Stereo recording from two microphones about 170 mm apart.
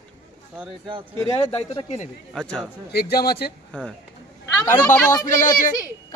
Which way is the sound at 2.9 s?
65° left (ahead or behind).